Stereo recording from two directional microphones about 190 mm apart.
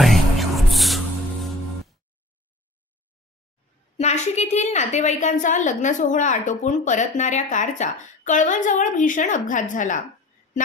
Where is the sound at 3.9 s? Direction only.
35° left (ahead or behind).